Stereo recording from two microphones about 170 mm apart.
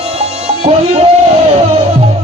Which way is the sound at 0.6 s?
35° right (ahead or behind).